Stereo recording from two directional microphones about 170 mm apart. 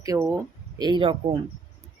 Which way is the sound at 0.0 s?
20° right (ahead or behind).